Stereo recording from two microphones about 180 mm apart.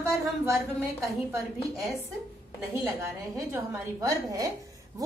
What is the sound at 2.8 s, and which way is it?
A woman's voice, 15° right (ahead or behind).